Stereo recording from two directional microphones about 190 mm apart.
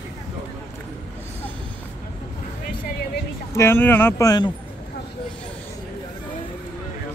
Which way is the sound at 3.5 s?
15° left (ahead or behind).